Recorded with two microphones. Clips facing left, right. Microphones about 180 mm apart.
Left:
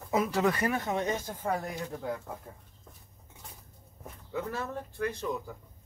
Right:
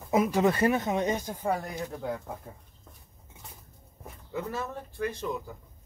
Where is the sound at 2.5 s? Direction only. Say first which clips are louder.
Right 2 dB; 5° right (ahead or behind).